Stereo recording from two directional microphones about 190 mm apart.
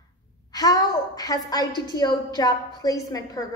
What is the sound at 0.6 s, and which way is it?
A woman's voice, 20° left (ahead or behind).